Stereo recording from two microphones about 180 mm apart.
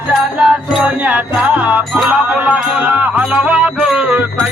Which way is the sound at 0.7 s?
5° right (ahead or behind).